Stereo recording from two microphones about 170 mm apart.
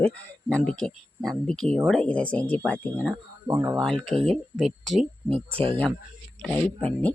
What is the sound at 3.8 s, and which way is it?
Speech, 5° left (ahead or behind).